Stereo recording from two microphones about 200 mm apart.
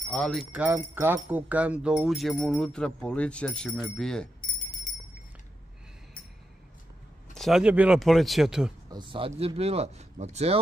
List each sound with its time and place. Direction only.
0.1 s speech: 5° left (ahead or behind)
7.3 s speech: centre (ahead or behind)
8.9 s speech: 25° right (ahead or behind)